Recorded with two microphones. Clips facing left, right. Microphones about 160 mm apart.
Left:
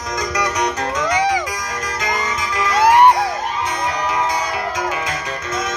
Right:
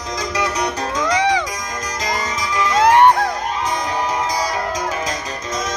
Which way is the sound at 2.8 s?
10° left (ahead or behind).